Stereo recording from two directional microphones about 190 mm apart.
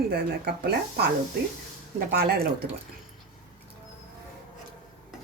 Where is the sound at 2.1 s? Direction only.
55° right (ahead or behind).